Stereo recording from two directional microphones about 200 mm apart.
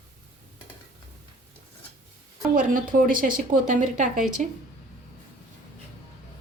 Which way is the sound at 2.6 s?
40° right (ahead or behind).